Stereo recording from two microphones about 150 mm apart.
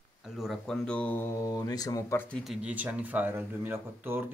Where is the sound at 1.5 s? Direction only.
25° left (ahead or behind).